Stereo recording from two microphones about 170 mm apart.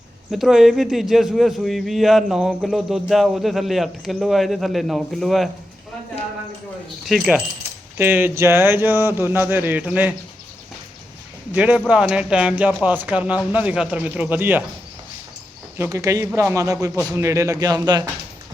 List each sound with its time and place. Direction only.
0.3 s a man's voice: centre (ahead or behind)
7.0 s a man's voice: centre (ahead or behind)
11.5 s speech: 10° right (ahead or behind)
15.8 s speech: 20° right (ahead or behind)